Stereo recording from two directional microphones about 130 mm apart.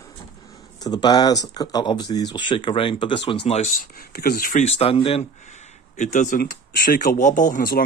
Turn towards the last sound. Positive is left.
turn(degrees=80)